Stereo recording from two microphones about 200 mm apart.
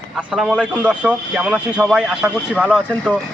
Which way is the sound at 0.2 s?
5° right (ahead or behind).